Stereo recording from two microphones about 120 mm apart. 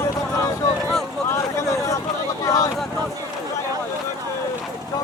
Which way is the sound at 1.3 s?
25° left (ahead or behind).